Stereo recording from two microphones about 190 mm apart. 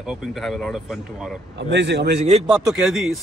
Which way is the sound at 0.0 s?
Centre (ahead or behind).